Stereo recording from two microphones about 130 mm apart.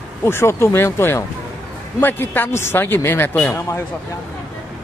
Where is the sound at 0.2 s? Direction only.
20° left (ahead or behind).